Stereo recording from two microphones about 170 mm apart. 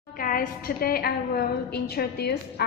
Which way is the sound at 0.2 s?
60° left (ahead or behind).